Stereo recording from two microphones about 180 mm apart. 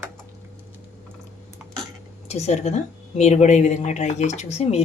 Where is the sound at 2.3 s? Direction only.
35° left (ahead or behind).